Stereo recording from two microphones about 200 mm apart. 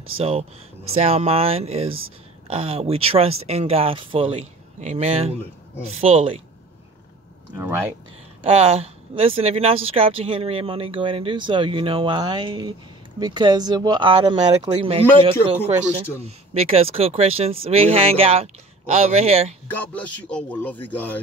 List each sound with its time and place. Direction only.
0.2 s speech: 30° right (ahead or behind)
7.5 s speech: 10° right (ahead or behind)
8.5 s speech: 30° right (ahead or behind)
16.3 s speech: 30° right (ahead or behind)
19.7 s speech: 10° left (ahead or behind)